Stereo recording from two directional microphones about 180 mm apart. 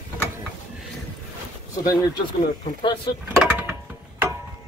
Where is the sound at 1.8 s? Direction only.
25° left (ahead or behind).